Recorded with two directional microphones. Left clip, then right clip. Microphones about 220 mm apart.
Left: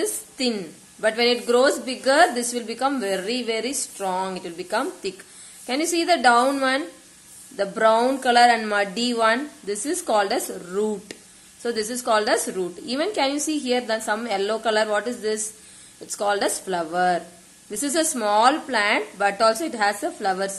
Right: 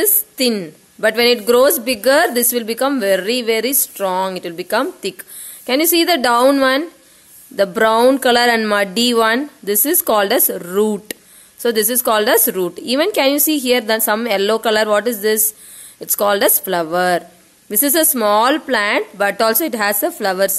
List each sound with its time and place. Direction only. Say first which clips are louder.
0.0 s a woman's voice: right 8 dB; 50° right (ahead or behind)